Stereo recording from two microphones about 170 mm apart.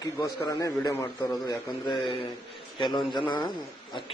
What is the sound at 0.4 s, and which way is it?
A man's voice, 20° left (ahead or behind).